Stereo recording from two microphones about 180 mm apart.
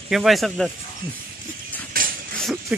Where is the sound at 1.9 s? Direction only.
55° right (ahead or behind).